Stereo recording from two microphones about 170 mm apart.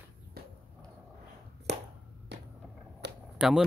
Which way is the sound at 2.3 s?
90° right.